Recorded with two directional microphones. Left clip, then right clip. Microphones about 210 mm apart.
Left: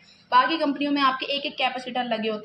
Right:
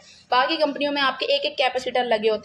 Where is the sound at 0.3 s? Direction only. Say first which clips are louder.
Even; 50° right (ahead or behind).